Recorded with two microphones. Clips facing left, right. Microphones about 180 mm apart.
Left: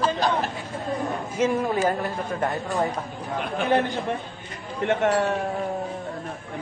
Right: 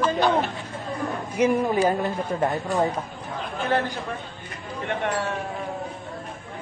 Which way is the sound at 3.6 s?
20° left (ahead or behind).